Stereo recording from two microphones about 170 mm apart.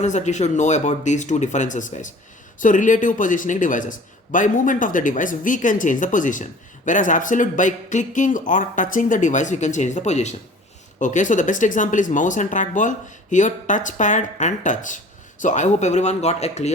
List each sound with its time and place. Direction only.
0.0 s a man's voice: 45° left (ahead or behind)